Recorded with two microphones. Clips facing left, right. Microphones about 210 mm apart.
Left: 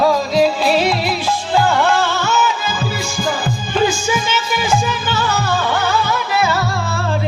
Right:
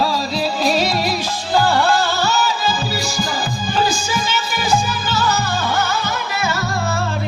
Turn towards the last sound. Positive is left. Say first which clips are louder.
# left 1 dB
turn(degrees=-45)  # may be behind; listen again after turning